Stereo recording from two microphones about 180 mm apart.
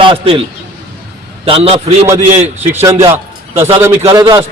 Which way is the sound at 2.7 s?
10° right (ahead or behind).